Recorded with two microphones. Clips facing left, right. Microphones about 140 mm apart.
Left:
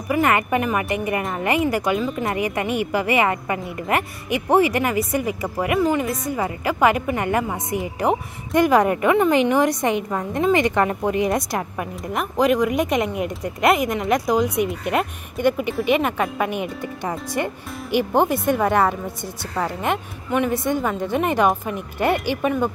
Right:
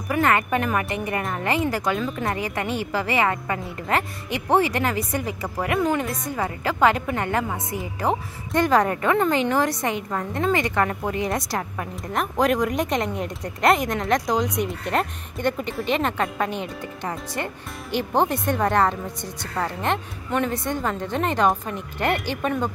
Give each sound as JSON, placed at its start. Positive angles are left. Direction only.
{"t": 0.1, "sound": "a woman's voice", "side_deg": 15}
{"t": 12.2, "sound": "a woman's voice", "side_deg": 0}